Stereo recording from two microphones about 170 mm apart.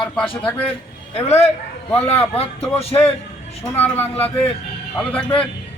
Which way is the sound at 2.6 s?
15° left (ahead or behind).